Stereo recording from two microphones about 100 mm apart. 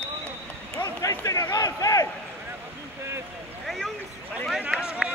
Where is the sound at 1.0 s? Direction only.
35° left (ahead or behind).